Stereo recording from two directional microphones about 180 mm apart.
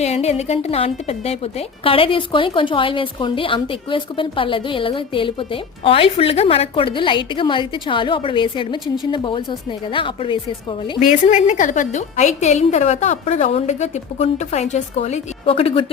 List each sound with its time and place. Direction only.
0.0 s a woman's voice: 35° left (ahead or behind)
11.0 s a woman's voice: 40° left (ahead or behind)